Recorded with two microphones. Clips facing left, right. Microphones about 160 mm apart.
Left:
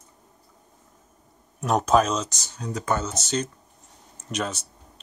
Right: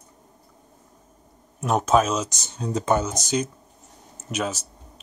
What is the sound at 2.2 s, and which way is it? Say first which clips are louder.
Speech: right 4 dB; 20° right (ahead or behind).